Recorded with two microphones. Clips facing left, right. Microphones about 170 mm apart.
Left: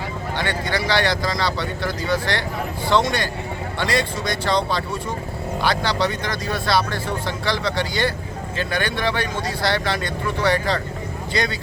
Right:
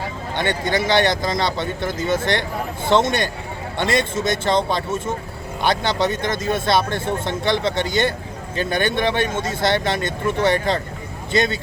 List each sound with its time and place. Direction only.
0.3 s speech: 20° right (ahead or behind)